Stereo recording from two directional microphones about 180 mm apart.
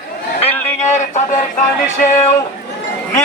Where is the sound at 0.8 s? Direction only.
40° left (ahead or behind).